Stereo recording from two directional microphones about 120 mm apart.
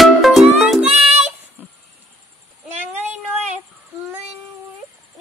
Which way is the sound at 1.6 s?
15° right (ahead or behind).